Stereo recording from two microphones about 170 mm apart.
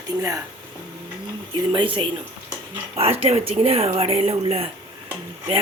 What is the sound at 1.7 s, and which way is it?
Speech, 30° right (ahead or behind).